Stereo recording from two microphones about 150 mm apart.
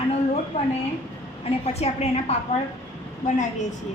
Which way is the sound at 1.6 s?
45° left (ahead or behind).